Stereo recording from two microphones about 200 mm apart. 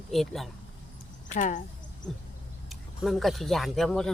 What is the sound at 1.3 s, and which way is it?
Speech, 40° left (ahead or behind).